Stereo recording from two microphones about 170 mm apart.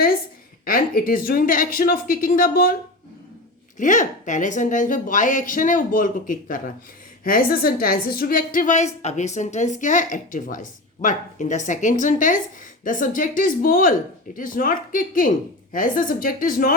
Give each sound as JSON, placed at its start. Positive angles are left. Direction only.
{"t": 0.6, "sound": "speech", "side_deg": 55}
{"t": 3.8, "sound": "a woman's voice", "side_deg": 50}